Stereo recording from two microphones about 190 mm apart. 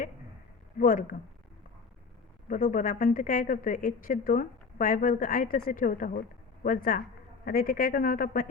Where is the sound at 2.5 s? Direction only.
45° left (ahead or behind).